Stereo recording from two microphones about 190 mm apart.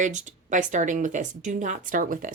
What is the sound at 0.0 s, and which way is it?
A woman's voice, 40° right (ahead or behind).